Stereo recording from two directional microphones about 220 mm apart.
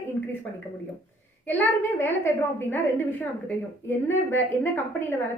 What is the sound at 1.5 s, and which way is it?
A woman's voice, 10° left (ahead or behind).